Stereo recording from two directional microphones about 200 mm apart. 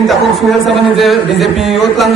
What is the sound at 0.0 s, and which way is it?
A man's voice, centre (ahead or behind).